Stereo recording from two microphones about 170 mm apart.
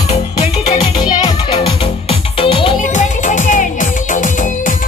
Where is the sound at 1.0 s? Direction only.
30° left (ahead or behind).